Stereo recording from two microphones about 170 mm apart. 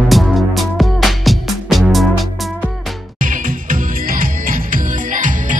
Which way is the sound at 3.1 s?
55° right (ahead or behind).